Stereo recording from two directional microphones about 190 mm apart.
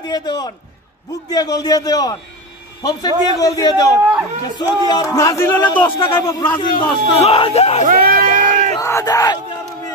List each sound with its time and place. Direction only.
0.0 s a man's voice: 20° left (ahead or behind)
7.8 s crowd: 50° right (ahead or behind)
8.7 s crowd: 15° left (ahead or behind)